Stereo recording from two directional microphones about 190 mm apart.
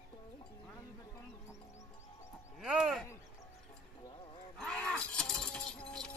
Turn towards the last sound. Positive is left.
turn(degrees=5)  # may be behind; listen again after turning